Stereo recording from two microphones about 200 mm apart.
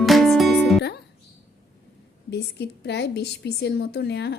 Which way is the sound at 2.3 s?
55° left (ahead or behind).